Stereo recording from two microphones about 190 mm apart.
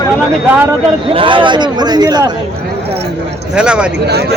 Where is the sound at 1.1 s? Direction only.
25° right (ahead or behind).